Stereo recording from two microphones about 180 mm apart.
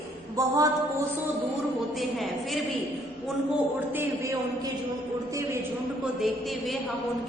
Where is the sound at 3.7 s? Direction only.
10° right (ahead or behind).